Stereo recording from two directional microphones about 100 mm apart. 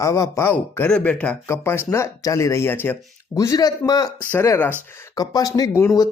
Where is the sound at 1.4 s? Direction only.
25° left (ahead or behind).